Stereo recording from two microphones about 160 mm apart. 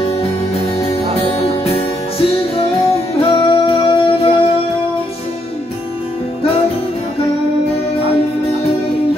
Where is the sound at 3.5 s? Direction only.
35° left (ahead or behind).